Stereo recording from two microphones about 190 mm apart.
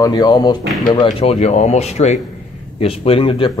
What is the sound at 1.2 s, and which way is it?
A man's voice, 35° left (ahead or behind).